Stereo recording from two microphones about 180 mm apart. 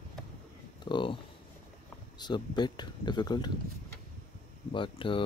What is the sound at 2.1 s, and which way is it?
Speech, 25° left (ahead or behind).